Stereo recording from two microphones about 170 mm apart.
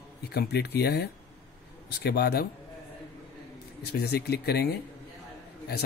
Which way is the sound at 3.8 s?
70° left (ahead or behind).